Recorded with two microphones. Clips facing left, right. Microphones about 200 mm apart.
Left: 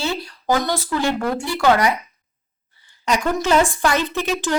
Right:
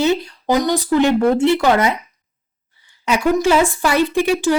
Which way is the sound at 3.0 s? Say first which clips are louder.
Right 5 dB; 10° right (ahead or behind).